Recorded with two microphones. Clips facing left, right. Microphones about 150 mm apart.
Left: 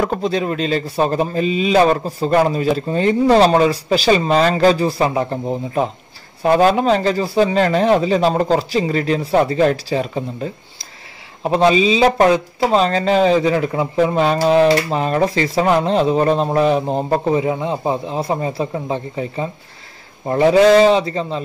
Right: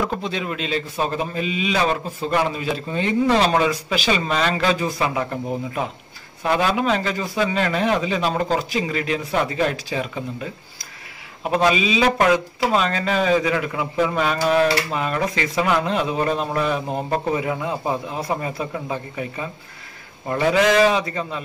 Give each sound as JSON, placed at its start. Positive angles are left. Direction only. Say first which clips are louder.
{"t": 0.0, "sound": "a man's voice", "louder": "left 6 dB", "side_deg": 40}